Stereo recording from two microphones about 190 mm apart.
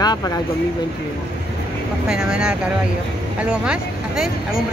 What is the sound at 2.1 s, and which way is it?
Speech, 5° right (ahead or behind).